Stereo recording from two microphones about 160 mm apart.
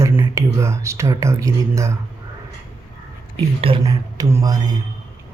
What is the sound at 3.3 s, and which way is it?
Speech, 35° right (ahead or behind).